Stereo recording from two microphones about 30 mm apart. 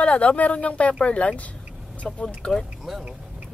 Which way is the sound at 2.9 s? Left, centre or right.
Centre.